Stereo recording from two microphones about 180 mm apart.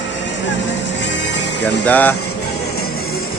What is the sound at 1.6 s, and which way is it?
Speech, 10° left (ahead or behind).